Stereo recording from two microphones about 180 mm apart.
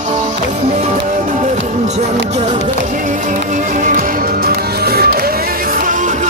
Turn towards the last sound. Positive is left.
turn(degrees=-60)  # may be behind; listen again after turning